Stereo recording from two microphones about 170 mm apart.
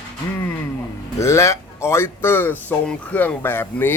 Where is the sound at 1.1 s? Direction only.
15° left (ahead or behind).